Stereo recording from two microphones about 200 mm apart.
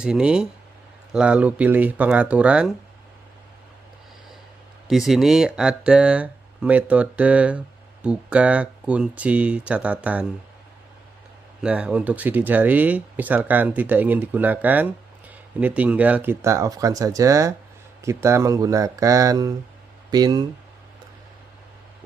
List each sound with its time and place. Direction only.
0.0 s speech: 5° right (ahead or behind)
4.8 s speech: centre (ahead or behind)
11.6 s speech: 5° right (ahead or behind)